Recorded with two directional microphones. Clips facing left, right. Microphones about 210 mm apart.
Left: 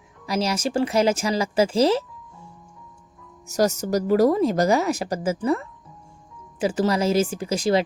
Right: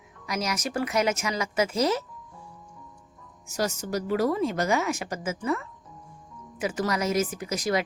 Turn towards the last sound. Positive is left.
turn(degrees=30)  # may be behind; listen again after turning